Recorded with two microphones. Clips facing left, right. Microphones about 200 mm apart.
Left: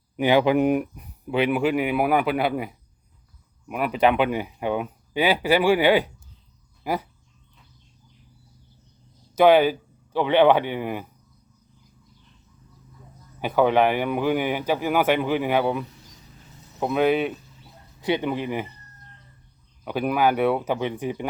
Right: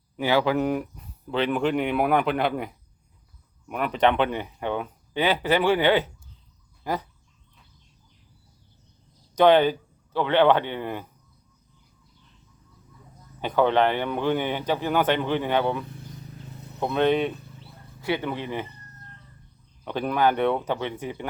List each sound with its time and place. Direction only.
0.2 s speech: 15° left (ahead or behind)
9.3 s speech: 10° left (ahead or behind)
13.4 s speech: 10° left (ahead or behind)
18.0 s speech: 15° left (ahead or behind)
19.8 s speech: 10° left (ahead or behind)